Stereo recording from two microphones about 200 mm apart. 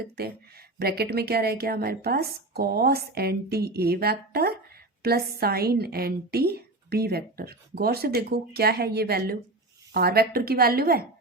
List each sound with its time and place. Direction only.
0.8 s a woman's voice: 50° right (ahead or behind)